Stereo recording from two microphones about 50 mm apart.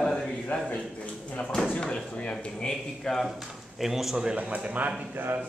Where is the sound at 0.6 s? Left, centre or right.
Left.